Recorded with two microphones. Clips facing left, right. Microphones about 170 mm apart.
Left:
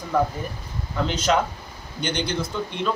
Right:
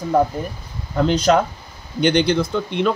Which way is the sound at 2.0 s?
65° right (ahead or behind).